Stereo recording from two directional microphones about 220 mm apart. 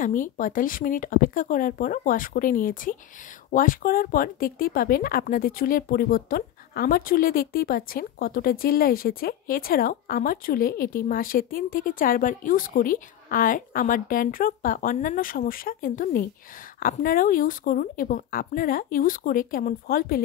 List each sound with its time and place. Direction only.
0.0 s speech: 35° left (ahead or behind)